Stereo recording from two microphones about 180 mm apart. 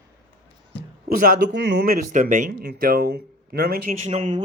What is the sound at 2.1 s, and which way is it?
Speech, 45° right (ahead or behind).